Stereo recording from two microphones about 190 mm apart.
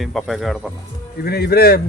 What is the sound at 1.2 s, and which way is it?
Speech, 55° left (ahead or behind).